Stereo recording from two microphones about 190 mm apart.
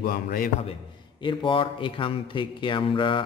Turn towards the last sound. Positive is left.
turn(degrees=25)  # may be behind; listen again after turning